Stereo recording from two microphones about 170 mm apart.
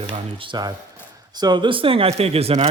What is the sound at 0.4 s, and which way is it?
Speech, 25° right (ahead or behind).